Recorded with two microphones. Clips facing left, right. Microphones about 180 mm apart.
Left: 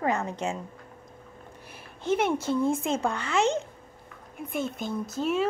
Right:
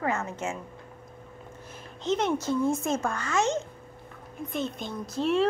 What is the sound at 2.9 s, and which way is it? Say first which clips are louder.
Speech: even; 20° left (ahead or behind).